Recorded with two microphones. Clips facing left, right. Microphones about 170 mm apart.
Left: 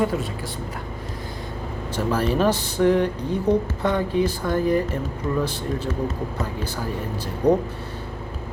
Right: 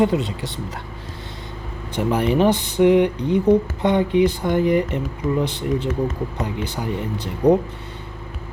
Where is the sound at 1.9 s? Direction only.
15° right (ahead or behind).